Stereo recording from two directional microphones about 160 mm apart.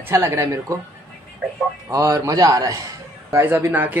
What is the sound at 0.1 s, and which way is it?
Speech, 15° right (ahead or behind).